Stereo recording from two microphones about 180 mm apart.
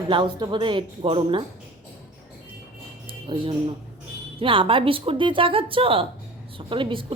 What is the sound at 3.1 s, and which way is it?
Music, 30° right (ahead or behind).